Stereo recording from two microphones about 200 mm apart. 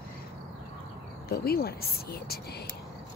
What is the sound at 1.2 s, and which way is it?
Speech, 50° left (ahead or behind).